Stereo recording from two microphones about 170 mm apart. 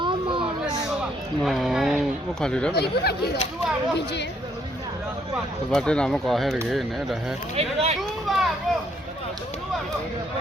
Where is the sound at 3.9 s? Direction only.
85° left.